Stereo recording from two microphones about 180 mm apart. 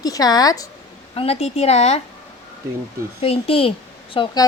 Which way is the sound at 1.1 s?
35° left (ahead or behind).